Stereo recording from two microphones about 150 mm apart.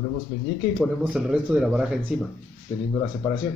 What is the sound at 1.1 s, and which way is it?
A man's voice, 5° right (ahead or behind).